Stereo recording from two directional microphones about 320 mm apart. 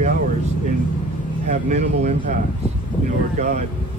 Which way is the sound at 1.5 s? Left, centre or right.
Right.